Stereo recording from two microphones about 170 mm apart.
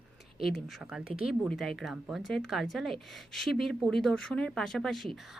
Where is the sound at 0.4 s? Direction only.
5° right (ahead or behind).